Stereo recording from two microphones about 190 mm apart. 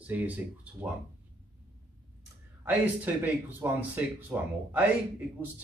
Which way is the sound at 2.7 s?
10° right (ahead or behind).